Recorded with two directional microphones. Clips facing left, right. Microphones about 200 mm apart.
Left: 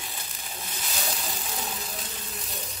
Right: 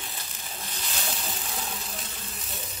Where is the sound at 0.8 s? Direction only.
Centre (ahead or behind).